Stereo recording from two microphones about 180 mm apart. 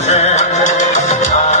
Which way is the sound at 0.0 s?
40° left (ahead or behind).